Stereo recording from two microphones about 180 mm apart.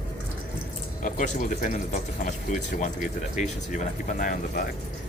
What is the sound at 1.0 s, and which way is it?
Speech, 45° left (ahead or behind).